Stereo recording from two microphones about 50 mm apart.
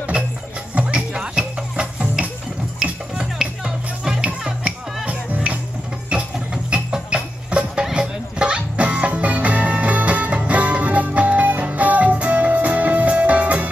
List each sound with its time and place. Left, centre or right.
0.1 s music: centre
5.0 s music: right
6.5 s music: centre